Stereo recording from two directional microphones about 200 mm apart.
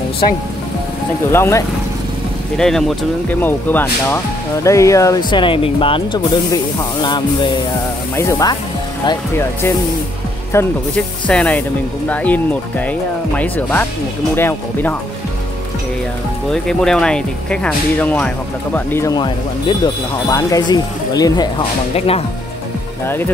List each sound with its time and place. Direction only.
1.3 s speech: 15° left (ahead or behind)
2.5 s speech: centre (ahead or behind)
16.6 s speech: 5° left (ahead or behind); by 21.6 s 20° left (ahead or behind)
21.9 s speech: 30° left (ahead or behind)
23.0 s speech: 10° left (ahead or behind)